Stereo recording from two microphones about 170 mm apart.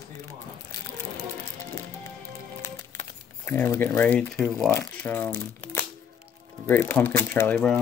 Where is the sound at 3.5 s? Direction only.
10° left (ahead or behind).